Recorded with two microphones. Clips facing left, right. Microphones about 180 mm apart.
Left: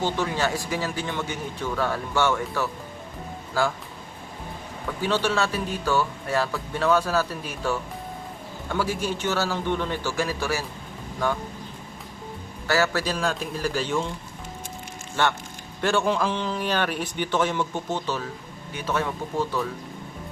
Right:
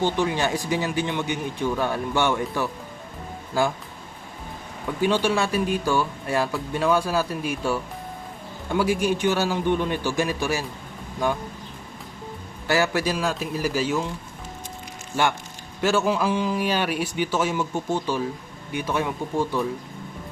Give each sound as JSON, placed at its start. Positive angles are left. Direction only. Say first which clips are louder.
{"t": 0.0, "sound": "speech", "louder": "right 2 dB", "side_deg": -15}
{"t": 5.0, "sound": "speech", "louder": "right 2 dB", "side_deg": -15}
{"t": 12.6, "sound": "speech", "louder": "right 1 dB", "side_deg": -15}
{"t": 15.1, "sound": "speech", "louder": "right 1 dB", "side_deg": -10}